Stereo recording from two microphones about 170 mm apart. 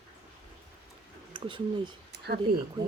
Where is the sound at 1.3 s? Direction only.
30° right (ahead or behind).